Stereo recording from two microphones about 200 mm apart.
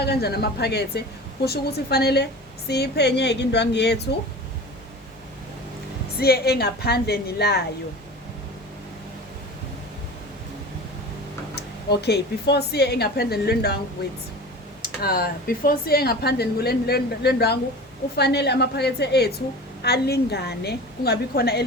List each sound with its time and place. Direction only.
0.0 s a woman's voice: 55° left (ahead or behind)
6.1 s speech: 50° left (ahead or behind)
11.5 s a woman's voice: 55° left (ahead or behind)